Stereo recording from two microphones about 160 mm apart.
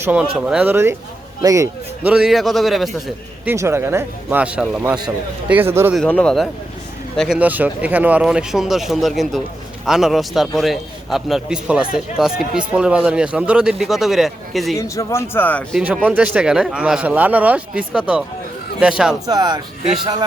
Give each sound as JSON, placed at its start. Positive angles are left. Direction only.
{"t": 0.0, "sound": "a man's voice", "side_deg": -10}
{"t": 2.1, "sound": "a man's voice", "side_deg": 0}
{"t": 3.4, "sound": "speech", "side_deg": -15}
{"t": 6.0, "sound": "a man's voice", "side_deg": 5}
{"t": 14.8, "sound": "speech", "side_deg": 20}
{"t": 16.0, "sound": "a man's voice", "side_deg": -10}
{"t": 19.2, "sound": "a man's voice", "side_deg": -25}